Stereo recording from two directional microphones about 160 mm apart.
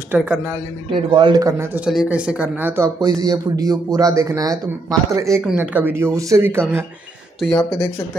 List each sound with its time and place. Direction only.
0.1 s speech: 10° right (ahead or behind)
1.1 s speech: 30° right (ahead or behind)
1.9 s speech: 5° right (ahead or behind)
7.3 s speech: centre (ahead or behind)